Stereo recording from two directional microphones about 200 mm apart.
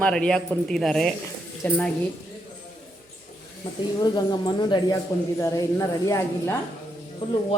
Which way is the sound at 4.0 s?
20° left (ahead or behind).